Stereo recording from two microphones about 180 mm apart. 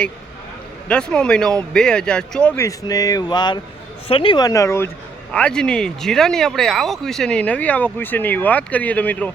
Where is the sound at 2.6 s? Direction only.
20° left (ahead or behind).